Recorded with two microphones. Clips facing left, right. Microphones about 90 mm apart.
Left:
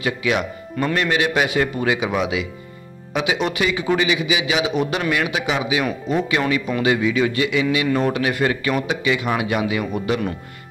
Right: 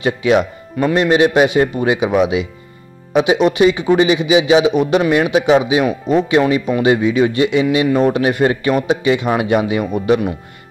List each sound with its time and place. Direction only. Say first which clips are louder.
0.0 s a man's voice: right 7 dB; 30° right (ahead or behind)
0.7 s a man's voice: right 7 dB; 20° right (ahead or behind)